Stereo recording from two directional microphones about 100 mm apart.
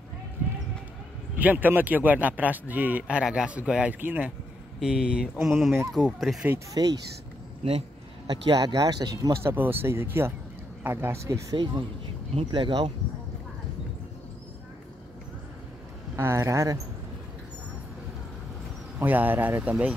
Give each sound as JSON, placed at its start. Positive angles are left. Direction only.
{"t": 1.4, "sound": "a man's voice", "side_deg": -15}
{"t": 4.7, "sound": "speech", "side_deg": -5}
{"t": 6.7, "sound": "speech", "side_deg": -40}
{"t": 8.3, "sound": "speech", "side_deg": -45}
{"t": 11.5, "sound": "speech", "side_deg": -50}
{"t": 16.2, "sound": "speech", "side_deg": -25}
{"t": 18.9, "sound": "a man's voice", "side_deg": -20}